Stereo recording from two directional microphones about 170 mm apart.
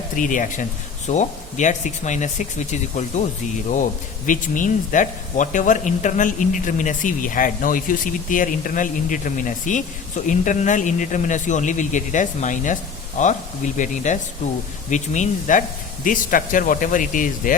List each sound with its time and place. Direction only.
0.2 s speech: 50° left (ahead or behind)
4.3 s speech: 50° left (ahead or behind)